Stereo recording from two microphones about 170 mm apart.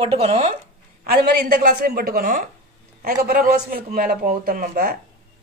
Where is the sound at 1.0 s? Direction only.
60° right (ahead or behind).